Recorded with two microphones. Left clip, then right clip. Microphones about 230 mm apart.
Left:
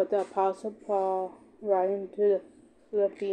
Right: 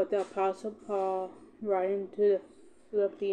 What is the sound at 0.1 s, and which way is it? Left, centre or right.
Speech, centre.